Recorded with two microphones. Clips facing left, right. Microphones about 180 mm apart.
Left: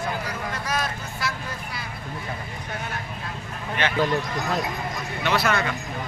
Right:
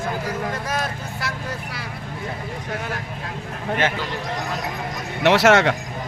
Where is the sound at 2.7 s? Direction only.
90° right.